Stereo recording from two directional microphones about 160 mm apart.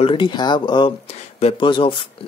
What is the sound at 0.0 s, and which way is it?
Speech, 30° left (ahead or behind).